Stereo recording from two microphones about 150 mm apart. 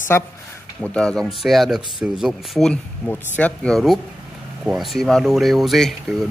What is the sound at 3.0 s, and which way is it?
A man's voice, 10° left (ahead or behind).